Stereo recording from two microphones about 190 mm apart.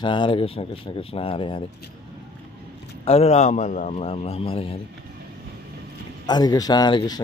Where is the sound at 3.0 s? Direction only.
35° left (ahead or behind).